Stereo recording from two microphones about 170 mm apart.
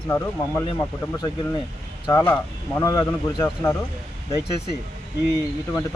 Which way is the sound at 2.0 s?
15° left (ahead or behind).